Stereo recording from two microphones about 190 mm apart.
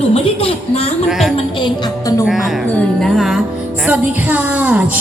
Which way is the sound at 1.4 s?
25° left (ahead or behind).